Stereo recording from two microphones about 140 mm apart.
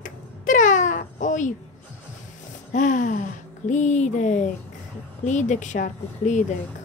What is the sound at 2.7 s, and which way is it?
Speech, 65° left (ahead or behind).